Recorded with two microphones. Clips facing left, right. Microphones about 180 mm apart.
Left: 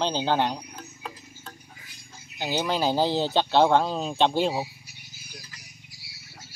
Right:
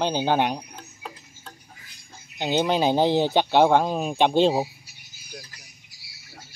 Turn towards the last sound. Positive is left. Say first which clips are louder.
# right 6 dB
turn(degrees=-35)  # may be behind; listen again after turning